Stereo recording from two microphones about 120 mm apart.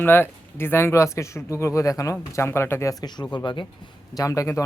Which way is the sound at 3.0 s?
35° left (ahead or behind).